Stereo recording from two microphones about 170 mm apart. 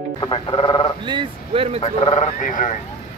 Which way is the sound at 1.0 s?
30° right (ahead or behind).